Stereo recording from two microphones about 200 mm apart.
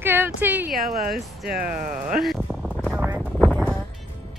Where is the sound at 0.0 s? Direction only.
10° right (ahead or behind).